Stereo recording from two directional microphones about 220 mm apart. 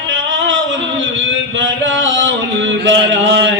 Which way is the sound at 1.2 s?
55° right (ahead or behind).